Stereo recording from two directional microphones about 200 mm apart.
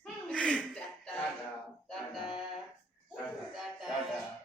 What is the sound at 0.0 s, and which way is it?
Chuckle, 5° left (ahead or behind).